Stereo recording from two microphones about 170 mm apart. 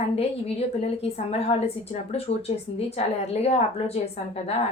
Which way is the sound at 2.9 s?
40° left (ahead or behind).